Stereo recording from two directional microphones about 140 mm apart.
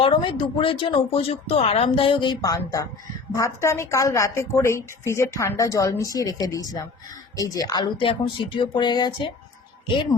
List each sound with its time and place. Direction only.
0.0 s a woman's voice: 40° left (ahead or behind)